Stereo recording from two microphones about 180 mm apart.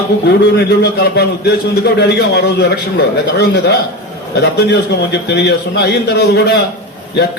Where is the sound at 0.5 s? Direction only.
60° left (ahead or behind).